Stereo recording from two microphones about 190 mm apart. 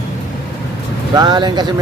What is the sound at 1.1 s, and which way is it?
Speech, 20° right (ahead or behind).